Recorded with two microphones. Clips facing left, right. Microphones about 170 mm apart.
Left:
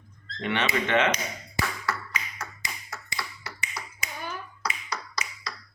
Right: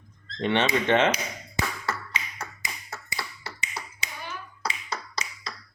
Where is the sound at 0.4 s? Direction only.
30° right (ahead or behind).